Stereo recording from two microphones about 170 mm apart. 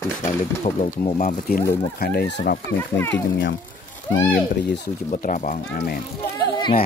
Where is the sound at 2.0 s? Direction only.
70° left (ahead or behind).